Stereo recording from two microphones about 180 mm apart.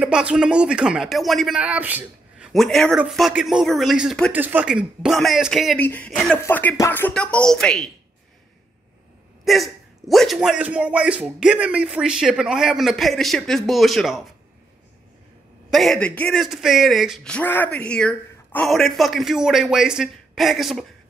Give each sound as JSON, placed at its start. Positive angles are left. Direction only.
{"t": 0.0, "sound": "speech", "side_deg": -5}
{"t": 5.8, "sound": "music", "side_deg": 10}
{"t": 9.4, "sound": "speech", "side_deg": 0}
{"t": 15.7, "sound": "speech", "side_deg": 0}